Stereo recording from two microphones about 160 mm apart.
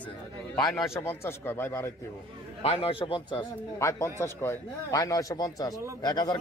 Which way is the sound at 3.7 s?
20° left (ahead or behind).